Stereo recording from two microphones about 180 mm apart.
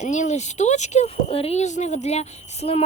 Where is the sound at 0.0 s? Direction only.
40° left (ahead or behind).